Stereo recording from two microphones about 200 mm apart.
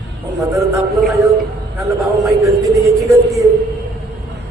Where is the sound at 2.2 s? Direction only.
15° right (ahead or behind).